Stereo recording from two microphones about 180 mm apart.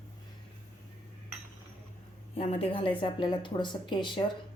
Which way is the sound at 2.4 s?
35° left (ahead or behind).